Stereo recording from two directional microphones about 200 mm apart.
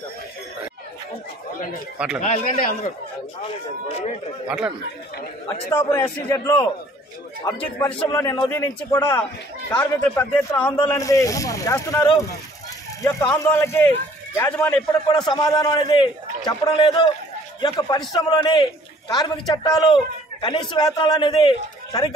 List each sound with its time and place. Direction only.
2.2 s a man's voice: 40° left (ahead or behind)
4.5 s speech: 5° right (ahead or behind)
5.7 s speech: 15° left (ahead or behind)
13.4 s a man's voice: 15° left (ahead or behind)